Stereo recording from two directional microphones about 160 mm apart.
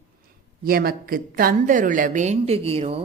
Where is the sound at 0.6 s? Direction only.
70° right (ahead or behind).